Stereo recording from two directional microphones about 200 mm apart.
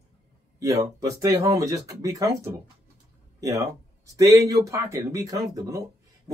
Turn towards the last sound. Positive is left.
turn(degrees=-15)  # may be behind; listen again after turning